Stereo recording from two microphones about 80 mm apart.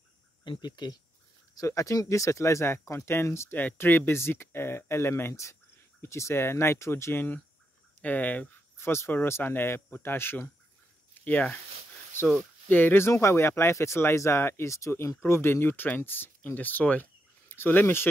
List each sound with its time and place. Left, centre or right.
0.4 s speech: left
1.7 s speech: left
8.0 s speech: centre
8.7 s speech: left
11.1 s a sound: left
12.1 s speech: left